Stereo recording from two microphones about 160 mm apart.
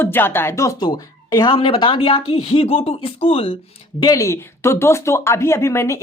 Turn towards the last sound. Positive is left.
turn(degrees=15)  # may be behind; listen again after turning